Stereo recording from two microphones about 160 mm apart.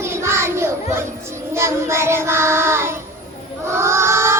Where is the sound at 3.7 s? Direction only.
15° right (ahead or behind).